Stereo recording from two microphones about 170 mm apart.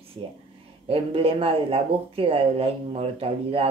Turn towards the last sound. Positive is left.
turn(degrees=-35)  # may be behind; listen again after turning